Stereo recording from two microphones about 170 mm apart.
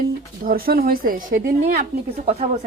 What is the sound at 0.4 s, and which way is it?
Speech, 60° right (ahead or behind).